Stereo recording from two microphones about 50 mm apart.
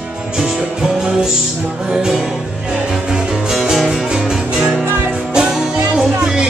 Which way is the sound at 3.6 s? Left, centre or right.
Centre.